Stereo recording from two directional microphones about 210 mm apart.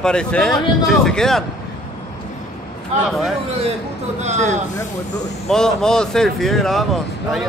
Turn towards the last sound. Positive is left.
turn(degrees=0)  # may be behind; listen again after turning